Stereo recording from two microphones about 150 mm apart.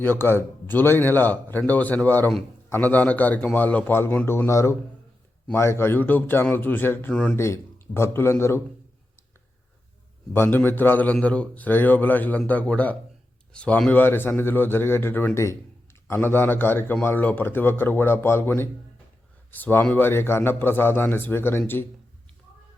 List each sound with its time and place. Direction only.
0.0 s a man's voice: 15° left (ahead or behind)
10.3 s a man's voice: 15° left (ahead or behind)